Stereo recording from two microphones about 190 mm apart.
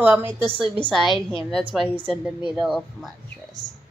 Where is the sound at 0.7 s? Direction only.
5° left (ahead or behind).